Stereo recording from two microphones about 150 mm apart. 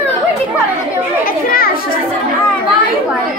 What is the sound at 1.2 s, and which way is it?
Speech, 75° left (ahead or behind).